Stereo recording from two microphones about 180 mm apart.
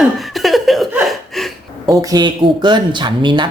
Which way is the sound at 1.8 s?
20° right (ahead or behind).